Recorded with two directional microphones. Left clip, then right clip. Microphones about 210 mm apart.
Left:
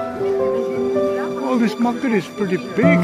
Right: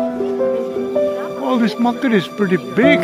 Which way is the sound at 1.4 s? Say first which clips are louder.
Right 4 dB; 15° right (ahead or behind).